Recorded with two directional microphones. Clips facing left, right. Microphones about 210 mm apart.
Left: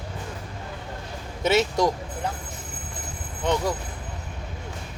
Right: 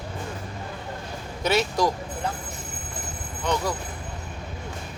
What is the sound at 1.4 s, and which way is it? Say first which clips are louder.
Speech: left 2 dB; 25° left (ahead or behind).